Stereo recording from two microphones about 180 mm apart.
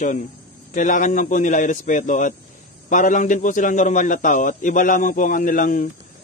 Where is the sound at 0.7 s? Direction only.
45° left (ahead or behind).